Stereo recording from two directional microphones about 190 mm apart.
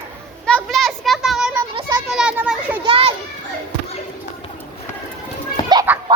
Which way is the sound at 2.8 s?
30° right (ahead or behind).